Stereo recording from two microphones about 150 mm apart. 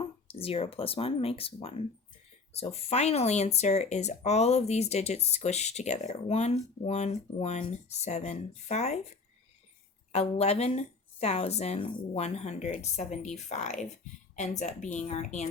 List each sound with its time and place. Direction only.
0.0 s speech: 40° left (ahead or behind)